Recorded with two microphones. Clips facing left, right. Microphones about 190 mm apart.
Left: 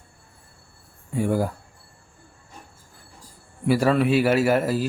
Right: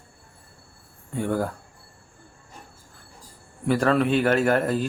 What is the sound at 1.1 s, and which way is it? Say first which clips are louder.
Speech: left 2 dB; 10° left (ahead or behind).